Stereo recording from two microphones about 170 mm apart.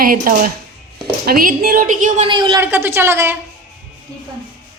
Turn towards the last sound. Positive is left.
turn(degrees=-15)  # may be behind; listen again after turning